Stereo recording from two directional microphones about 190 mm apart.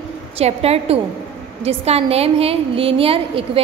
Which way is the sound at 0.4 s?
30° right (ahead or behind).